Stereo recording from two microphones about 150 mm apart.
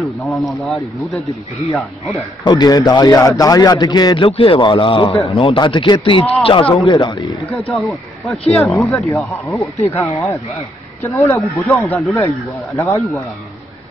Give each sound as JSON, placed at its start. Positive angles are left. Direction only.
{"t": 0.0, "sound": "speech", "side_deg": 0}
{"t": 2.4, "sound": "a man's voice", "side_deg": 25}
{"t": 7.1, "sound": "a man's voice", "side_deg": 20}
{"t": 7.7, "sound": "speech", "side_deg": 0}
{"t": 9.6, "sound": "a man's voice", "side_deg": 20}
{"t": 11.9, "sound": "speech", "side_deg": 0}
{"t": 12.2, "sound": "a man's voice", "side_deg": 20}